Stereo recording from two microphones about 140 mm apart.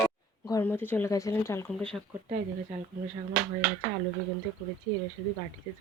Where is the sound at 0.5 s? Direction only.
15° left (ahead or behind).